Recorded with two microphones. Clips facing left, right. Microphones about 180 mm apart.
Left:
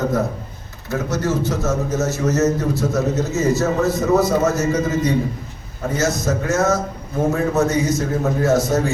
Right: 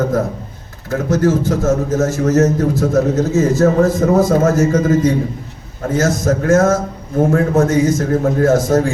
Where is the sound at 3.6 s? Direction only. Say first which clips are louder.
Right 6 dB; 50° right (ahead or behind).